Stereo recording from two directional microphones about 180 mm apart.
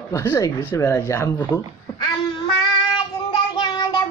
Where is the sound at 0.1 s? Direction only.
15° left (ahead or behind).